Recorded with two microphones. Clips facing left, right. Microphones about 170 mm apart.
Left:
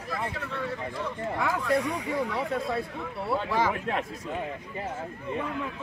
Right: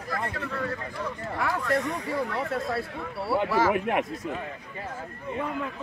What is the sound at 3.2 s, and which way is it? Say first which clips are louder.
Speech: right 3 dB; 5° right (ahead or behind).